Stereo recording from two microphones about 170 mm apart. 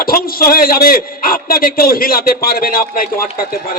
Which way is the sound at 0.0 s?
60° left (ahead or behind).